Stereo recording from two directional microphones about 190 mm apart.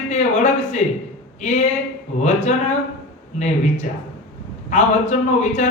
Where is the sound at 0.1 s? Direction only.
35° left (ahead or behind).